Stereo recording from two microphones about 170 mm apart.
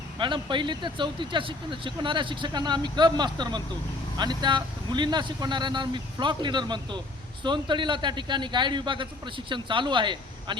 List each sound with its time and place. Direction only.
0.2 s speech: 30° right (ahead or behind)